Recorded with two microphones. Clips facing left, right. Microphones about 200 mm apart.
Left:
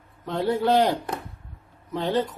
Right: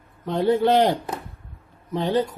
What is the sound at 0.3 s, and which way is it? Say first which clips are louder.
A man's voice: right 3 dB; 20° right (ahead or behind).